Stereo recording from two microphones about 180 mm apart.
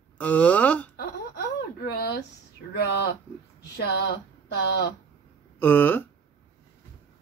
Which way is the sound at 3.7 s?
65° left (ahead or behind).